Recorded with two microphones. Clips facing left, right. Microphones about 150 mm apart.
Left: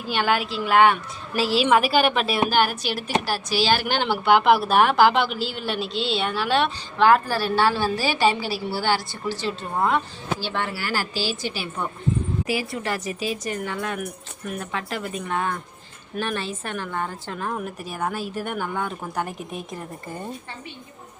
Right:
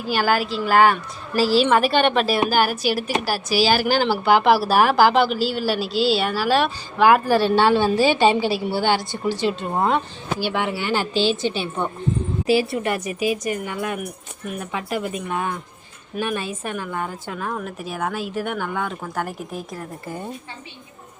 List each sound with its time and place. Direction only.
0.1 s a woman's voice: 5° right (ahead or behind); by 10.0 s 25° right (ahead or behind)
10.4 s a woman's voice: 15° right (ahead or behind)
17.4 s a woman's voice: 5° left (ahead or behind)